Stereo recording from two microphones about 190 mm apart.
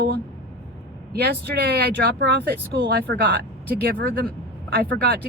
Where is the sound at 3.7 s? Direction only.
55° right (ahead or behind).